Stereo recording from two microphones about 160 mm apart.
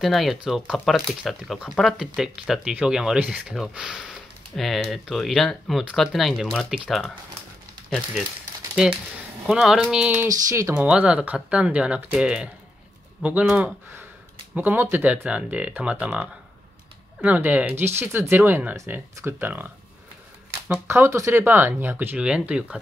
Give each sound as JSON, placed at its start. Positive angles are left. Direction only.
{"t": 0.0, "sound": "speech", "side_deg": 0}
{"t": 9.5, "sound": "speech", "side_deg": 0}